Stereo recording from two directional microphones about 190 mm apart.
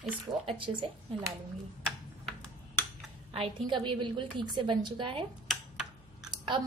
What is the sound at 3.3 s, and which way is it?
Speech, 30° right (ahead or behind).